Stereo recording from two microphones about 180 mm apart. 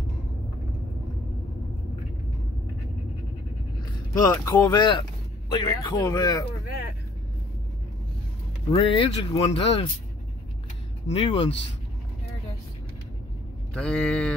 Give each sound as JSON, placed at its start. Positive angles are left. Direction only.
{"t": 4.1, "sound": "speech", "side_deg": 20}
{"t": 8.7, "sound": "speech", "side_deg": 30}
{"t": 11.1, "sound": "speech", "side_deg": 30}
{"t": 13.7, "sound": "a sound", "side_deg": 5}